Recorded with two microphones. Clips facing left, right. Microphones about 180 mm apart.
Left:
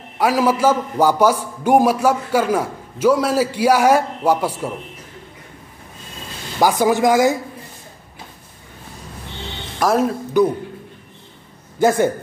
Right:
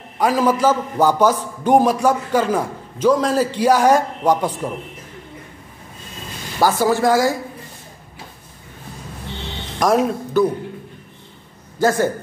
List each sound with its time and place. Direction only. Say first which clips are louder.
0.2 s a man's voice: even; 10° left (ahead or behind)
6.6 s a man's voice: left 1 dB; 15° left (ahead or behind)
9.8 s speech: right 1 dB; centre (ahead or behind)
10.4 s a man's voice: left 1 dB; 15° left (ahead or behind)
11.8 s a man's voice: left 2 dB; 20° left (ahead or behind)